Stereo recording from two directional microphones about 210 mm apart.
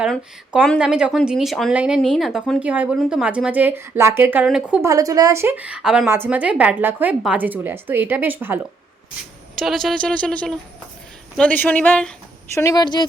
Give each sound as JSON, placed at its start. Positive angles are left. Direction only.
{"t": 0.0, "sound": "speech", "side_deg": 0}
{"t": 9.6, "sound": "speech", "side_deg": 0}
{"t": 12.5, "sound": "speech", "side_deg": 15}